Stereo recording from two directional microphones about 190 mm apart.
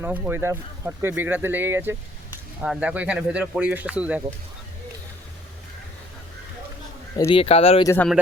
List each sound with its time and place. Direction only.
0.0 s speech: 10° right (ahead or behind)
7.3 s speech: 30° left (ahead or behind)